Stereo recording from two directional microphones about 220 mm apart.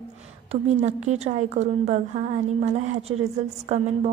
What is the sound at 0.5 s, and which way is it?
A woman's voice, 30° right (ahead or behind).